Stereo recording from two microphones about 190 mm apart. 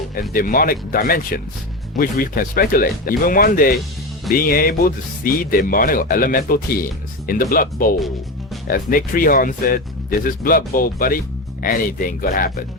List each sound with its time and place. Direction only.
0.2 s speech: 50° left (ahead or behind)